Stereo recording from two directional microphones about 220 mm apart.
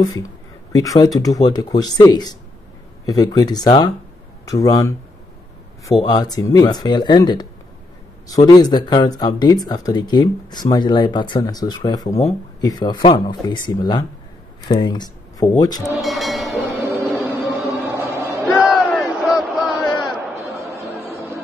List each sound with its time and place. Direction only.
0.0 s speech: 15° left (ahead or behind)
16.0 s train: centre (ahead or behind)
17.2 s music: 10° right (ahead or behind)
18.7 s crowd: centre (ahead or behind)
20.5 s a sound: 10° right (ahead or behind)